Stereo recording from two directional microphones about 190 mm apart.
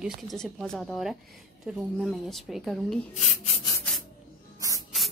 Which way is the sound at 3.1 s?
40° left (ahead or behind).